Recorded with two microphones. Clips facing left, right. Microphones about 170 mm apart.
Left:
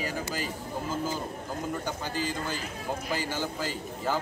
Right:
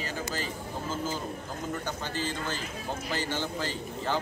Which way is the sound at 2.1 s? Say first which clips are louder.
Left 1 dB; 10° left (ahead or behind).